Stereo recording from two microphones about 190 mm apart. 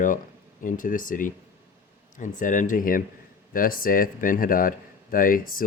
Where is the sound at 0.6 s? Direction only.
45° left (ahead or behind).